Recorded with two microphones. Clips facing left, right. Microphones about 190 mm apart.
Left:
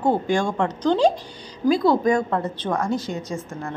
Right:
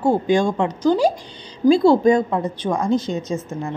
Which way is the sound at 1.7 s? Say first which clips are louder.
Right 5 dB; 30° right (ahead or behind).